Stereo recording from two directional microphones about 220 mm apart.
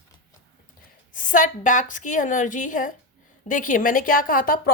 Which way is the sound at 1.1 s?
35° left (ahead or behind).